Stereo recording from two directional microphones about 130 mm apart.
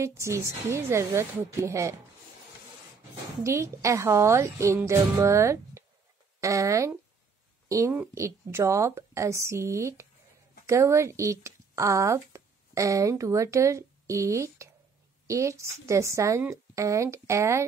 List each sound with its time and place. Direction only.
0.0 s speech: 20° right (ahead or behind)
3.4 s a woman's voice: 20° right (ahead or behind)